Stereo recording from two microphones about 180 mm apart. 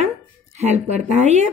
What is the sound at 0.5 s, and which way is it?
Speech, 40° right (ahead or behind).